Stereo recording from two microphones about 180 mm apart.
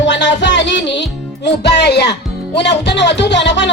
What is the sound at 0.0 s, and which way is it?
Music, 90° left.